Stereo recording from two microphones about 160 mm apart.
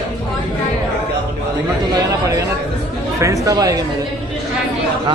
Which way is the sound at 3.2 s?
20° right (ahead or behind).